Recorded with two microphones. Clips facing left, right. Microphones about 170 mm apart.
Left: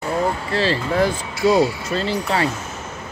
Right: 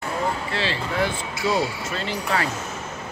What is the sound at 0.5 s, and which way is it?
Speech, 40° left (ahead or behind).